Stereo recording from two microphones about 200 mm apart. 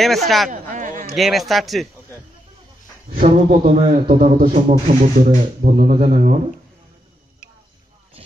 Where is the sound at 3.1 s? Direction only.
40° right (ahead or behind).